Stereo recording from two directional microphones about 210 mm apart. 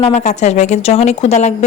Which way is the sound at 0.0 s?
35° left (ahead or behind).